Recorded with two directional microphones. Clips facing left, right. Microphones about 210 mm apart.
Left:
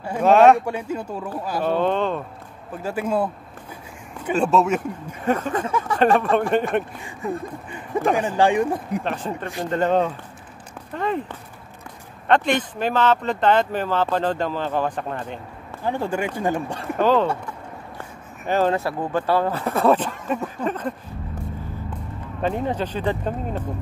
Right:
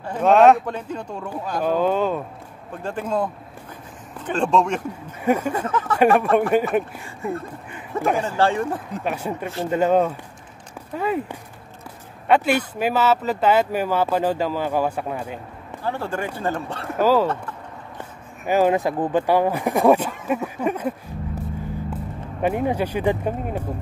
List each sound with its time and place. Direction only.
0.0 s speech: 5° left (ahead or behind)
1.6 s speech: 5° right (ahead or behind)
2.7 s speech: 5° left (ahead or behind)
5.2 s speech: 10° right (ahead or behind)
5.7 s speech: 10° left (ahead or behind)
5.9 s a man's voice: 10° right (ahead or behind)
8.1 s speech: 15° left (ahead or behind)
9.0 s speech: 10° right (ahead or behind)
15.8 s speech: 15° left (ahead or behind)
17.0 s speech: 5° right (ahead or behind)
18.4 s speech: 10° right (ahead or behind)
22.4 s speech: 10° right (ahead or behind)